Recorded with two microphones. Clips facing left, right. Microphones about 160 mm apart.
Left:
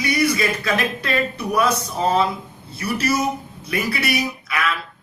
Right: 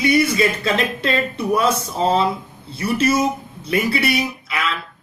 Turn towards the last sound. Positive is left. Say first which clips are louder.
# even
turn(degrees=-25)  # may be behind; listen again after turning